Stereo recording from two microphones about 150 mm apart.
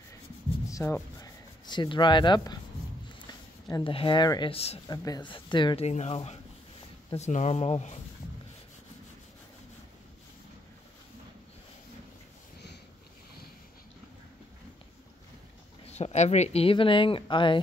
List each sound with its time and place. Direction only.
0.7 s rub: 20° left (ahead or behind)
1.2 s speech: 30° left (ahead or behind)
3.8 s speech: 35° left (ahead or behind)
4.8 s speech: 25° left (ahead or behind)
5.9 s speech: 45° left (ahead or behind)
15.9 s speech: 45° left (ahead or behind)